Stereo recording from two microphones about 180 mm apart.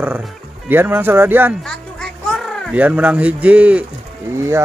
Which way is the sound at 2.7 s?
10° right (ahead or behind).